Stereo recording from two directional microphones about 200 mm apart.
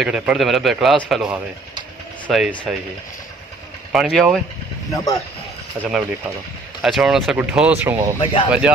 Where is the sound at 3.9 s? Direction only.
5° right (ahead or behind).